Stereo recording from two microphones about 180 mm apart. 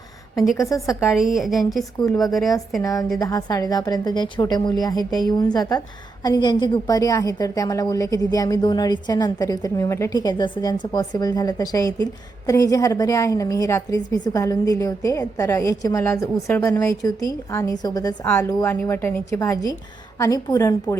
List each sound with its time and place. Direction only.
0.5 s a woman's voice: 15° left (ahead or behind)
1.1 s a woman's voice: centre (ahead or behind)
2.8 s a woman's voice: 20° left (ahead or behind)